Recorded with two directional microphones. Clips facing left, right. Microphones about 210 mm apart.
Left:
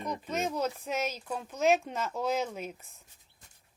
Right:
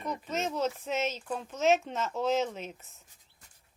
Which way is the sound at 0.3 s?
10° left (ahead or behind).